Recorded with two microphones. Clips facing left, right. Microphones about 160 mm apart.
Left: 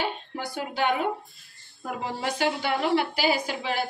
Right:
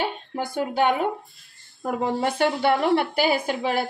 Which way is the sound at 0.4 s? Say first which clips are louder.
Right 6 dB; 50° right (ahead or behind).